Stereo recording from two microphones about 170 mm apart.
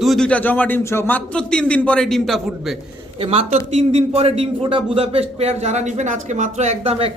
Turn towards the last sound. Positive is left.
turn(degrees=-35)  # may be behind; listen again after turning